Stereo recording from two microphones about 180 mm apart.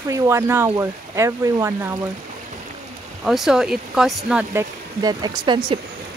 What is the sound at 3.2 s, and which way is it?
Speech, centre (ahead or behind).